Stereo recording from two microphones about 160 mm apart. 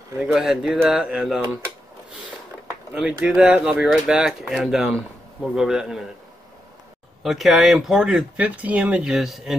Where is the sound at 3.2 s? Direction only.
5° right (ahead or behind).